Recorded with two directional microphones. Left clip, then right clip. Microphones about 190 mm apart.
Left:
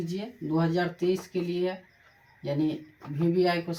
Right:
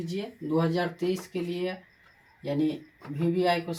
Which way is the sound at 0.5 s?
15° left (ahead or behind).